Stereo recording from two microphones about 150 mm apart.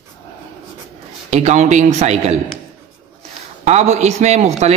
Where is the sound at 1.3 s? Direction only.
50° right (ahead or behind).